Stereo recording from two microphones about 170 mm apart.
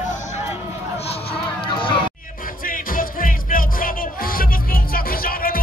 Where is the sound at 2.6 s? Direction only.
55° left (ahead or behind).